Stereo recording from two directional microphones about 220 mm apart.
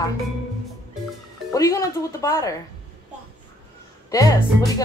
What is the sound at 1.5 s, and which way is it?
Speech, 15° left (ahead or behind).